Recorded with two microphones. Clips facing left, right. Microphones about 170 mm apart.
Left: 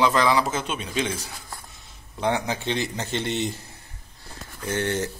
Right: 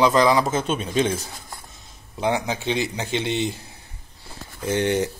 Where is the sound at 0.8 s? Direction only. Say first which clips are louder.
Right 6 dB; 30° right (ahead or behind).